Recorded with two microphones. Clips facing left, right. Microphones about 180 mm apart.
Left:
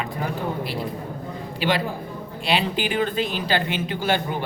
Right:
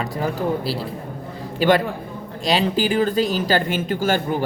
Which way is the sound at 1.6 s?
50° right (ahead or behind).